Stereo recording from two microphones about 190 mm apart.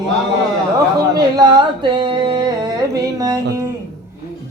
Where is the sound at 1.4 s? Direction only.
25° right (ahead or behind).